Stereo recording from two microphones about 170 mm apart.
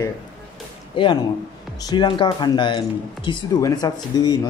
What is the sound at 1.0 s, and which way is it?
Speech, 25° left (ahead or behind).